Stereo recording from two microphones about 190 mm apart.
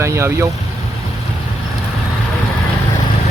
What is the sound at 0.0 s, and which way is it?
Speech, 15° right (ahead or behind).